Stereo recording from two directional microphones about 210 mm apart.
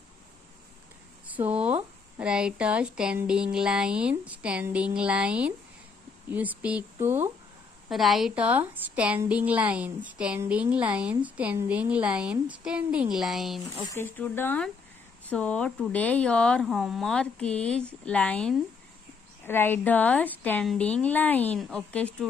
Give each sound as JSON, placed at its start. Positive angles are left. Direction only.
{"t": 1.3, "sound": "a sound", "side_deg": -5}
{"t": 2.1, "sound": "a woman's voice", "side_deg": -5}
{"t": 13.7, "sound": "a woman's voice", "side_deg": 15}